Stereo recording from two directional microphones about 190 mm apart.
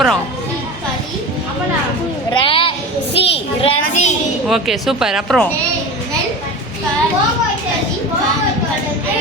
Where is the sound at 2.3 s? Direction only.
30° left (ahead or behind).